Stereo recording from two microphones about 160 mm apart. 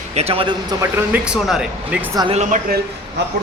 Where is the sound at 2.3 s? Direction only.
50° right (ahead or behind).